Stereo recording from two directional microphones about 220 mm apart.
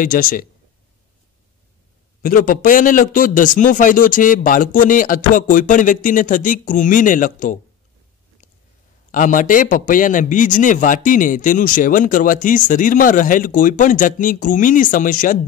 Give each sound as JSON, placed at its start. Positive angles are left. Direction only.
{"t": 0.0, "sound": "a man's voice", "side_deg": 40}
{"t": 2.2, "sound": "a man's voice", "side_deg": 40}
{"t": 9.1, "sound": "a man's voice", "side_deg": 35}